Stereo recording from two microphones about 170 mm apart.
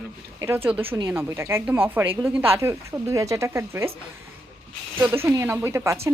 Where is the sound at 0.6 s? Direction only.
10° right (ahead or behind).